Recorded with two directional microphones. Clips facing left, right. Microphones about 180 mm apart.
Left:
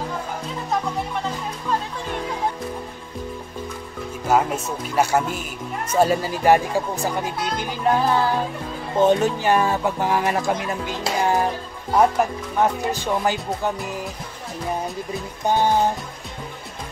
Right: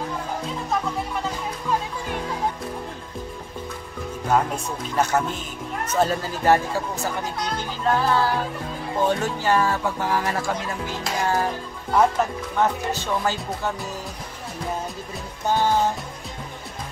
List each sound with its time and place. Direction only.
4.3 s speech: 5° left (ahead or behind)
15.4 s speech: 15° left (ahead or behind)